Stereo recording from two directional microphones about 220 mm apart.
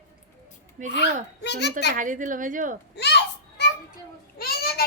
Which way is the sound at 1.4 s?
50° left (ahead or behind).